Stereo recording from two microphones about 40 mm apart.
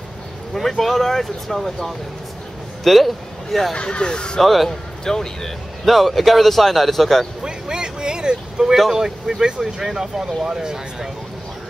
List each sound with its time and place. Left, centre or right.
0.6 s a man's voice: centre
2.8 s speech: centre
3.7 s speech: left
4.4 s a man's voice: centre
4.6 s speech: centre
5.9 s a man's voice: centre
7.4 s vehicle: centre
8.9 s speech: centre